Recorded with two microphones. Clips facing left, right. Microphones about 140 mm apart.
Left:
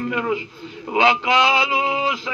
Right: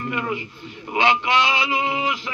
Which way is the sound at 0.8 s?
90° left.